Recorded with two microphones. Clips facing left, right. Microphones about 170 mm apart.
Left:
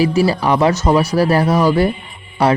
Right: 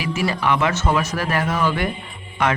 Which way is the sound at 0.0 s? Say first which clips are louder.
Left 8 dB; 35° left (ahead or behind).